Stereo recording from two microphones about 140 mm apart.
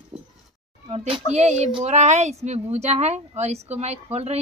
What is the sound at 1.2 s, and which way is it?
A woman's voice, 55° right (ahead or behind).